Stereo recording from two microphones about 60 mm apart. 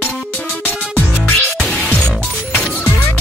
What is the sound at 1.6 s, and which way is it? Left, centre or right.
Music, left.